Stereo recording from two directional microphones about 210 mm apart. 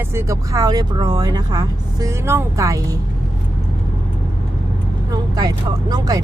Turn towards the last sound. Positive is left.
turn(degrees=-20)  # may be behind; listen again after turning